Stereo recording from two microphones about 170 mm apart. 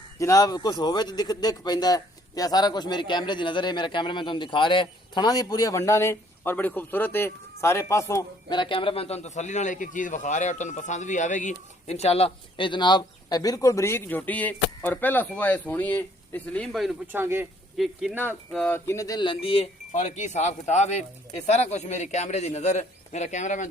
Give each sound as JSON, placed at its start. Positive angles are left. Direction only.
{"t": 0.2, "sound": "a man's voice", "side_deg": 20}
{"t": 17.1, "sound": "speech", "side_deg": -15}
{"t": 17.8, "sound": "speech", "side_deg": 0}
{"t": 18.5, "sound": "speech", "side_deg": 10}